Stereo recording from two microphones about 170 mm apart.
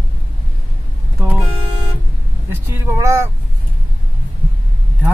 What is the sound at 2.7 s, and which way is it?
Speech, 15° right (ahead or behind).